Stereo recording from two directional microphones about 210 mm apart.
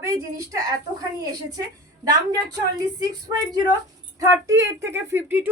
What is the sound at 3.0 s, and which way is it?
A woman's voice, 20° right (ahead or behind).